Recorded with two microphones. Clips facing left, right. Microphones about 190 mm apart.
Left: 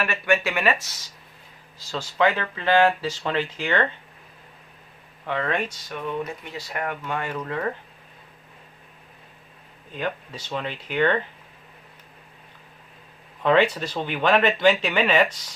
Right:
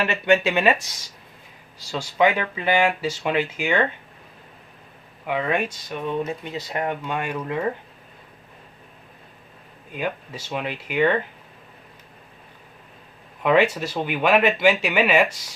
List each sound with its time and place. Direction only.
0.0 s speech: 20° right (ahead or behind)
5.2 s speech: 10° right (ahead or behind)
9.9 s speech: 10° right (ahead or behind)
13.4 s speech: 10° right (ahead or behind)